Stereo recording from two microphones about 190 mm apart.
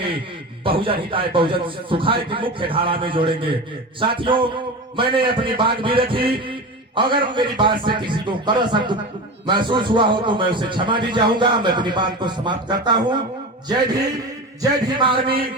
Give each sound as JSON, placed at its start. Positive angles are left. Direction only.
{"t": 0.6, "sound": "a man's voice", "side_deg": -30}
{"t": 14.6, "sound": "a man's voice", "side_deg": -25}